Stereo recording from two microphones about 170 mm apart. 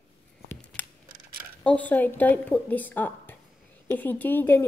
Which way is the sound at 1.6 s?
10° left (ahead or behind).